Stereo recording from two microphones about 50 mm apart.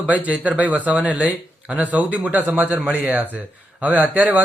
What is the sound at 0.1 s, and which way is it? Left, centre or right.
A man's voice, right.